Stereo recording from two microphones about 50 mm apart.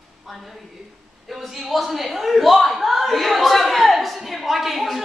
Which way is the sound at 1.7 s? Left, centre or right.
Centre.